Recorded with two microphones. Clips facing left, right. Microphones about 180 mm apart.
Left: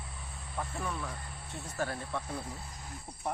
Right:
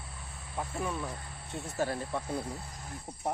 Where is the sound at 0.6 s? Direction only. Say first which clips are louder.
Right 3 dB; 20° right (ahead or behind).